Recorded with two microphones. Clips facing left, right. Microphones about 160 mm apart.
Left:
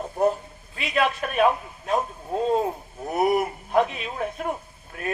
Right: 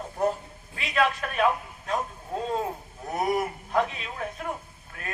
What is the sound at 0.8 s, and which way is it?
A man's voice, 20° left (ahead or behind).